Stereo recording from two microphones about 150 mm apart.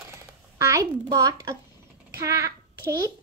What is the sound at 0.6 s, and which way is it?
A child's voice, 20° right (ahead or behind).